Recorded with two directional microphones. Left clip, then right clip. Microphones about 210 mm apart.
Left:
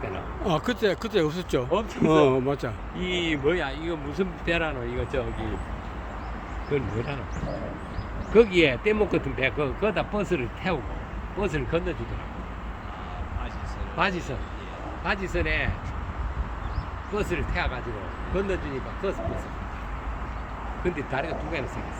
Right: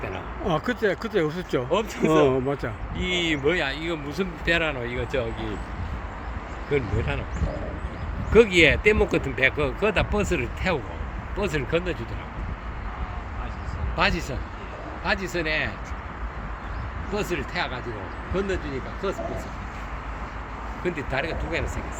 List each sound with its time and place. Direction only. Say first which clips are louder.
0.7 s speech: even; 10° left (ahead or behind)
1.7 s a man's voice: right 4 dB; 45° right (ahead or behind)
2.0 s speech: even; 5° left (ahead or behind)
3.0 s a man's voice: right 2 dB; 50° right (ahead or behind)
6.7 s speech: right 3 dB; 40° right (ahead or behind)
8.3 s a man's voice: right 3 dB; 40° right (ahead or behind)
13.9 s a man's voice: right 2 dB; 50° right (ahead or behind)
17.2 s a man's voice: right 1 dB; 45° right (ahead or behind)
20.8 s a man's voice: right 1 dB; 45° right (ahead or behind)